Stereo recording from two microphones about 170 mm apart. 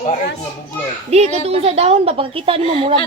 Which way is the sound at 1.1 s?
40° right (ahead or behind).